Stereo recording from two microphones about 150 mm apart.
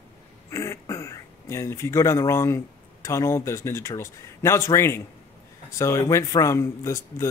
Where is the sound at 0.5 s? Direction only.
20° left (ahead or behind).